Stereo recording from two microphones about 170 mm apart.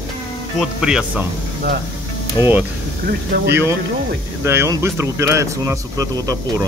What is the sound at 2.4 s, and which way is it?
Speech, 25° left (ahead or behind).